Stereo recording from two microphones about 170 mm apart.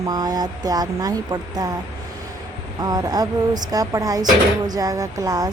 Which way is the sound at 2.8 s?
25° right (ahead or behind).